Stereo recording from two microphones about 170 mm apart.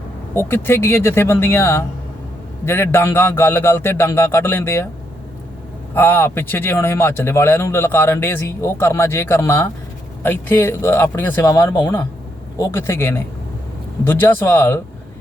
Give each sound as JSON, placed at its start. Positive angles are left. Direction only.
{"t": 0.3, "sound": "speech", "side_deg": 15}
{"t": 5.9, "sound": "speech", "side_deg": 10}